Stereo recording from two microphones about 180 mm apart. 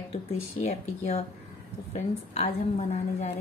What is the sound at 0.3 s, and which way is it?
A woman's voice, 40° left (ahead or behind).